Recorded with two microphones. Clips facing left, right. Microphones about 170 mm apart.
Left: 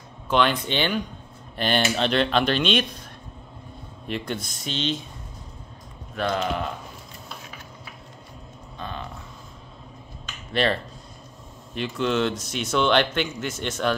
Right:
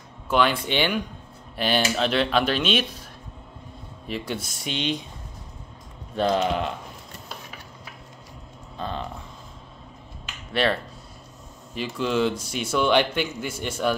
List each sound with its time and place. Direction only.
0.3 s speech: 5° right (ahead or behind)
4.1 s speech: 10° right (ahead or behind)
6.1 s speech: 30° right (ahead or behind)
8.7 s a sound: 30° right (ahead or behind)
10.2 s finger snapping: 5° right (ahead or behind)
11.8 s speech: 10° right (ahead or behind)